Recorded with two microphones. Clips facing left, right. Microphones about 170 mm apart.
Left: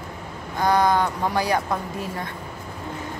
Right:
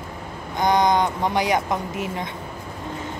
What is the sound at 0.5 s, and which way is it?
A woman's voice, 20° right (ahead or behind).